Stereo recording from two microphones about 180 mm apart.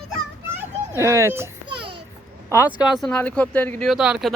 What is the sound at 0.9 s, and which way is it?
Speech, 15° right (ahead or behind).